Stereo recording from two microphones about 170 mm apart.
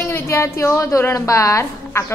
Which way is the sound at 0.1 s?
15° left (ahead or behind).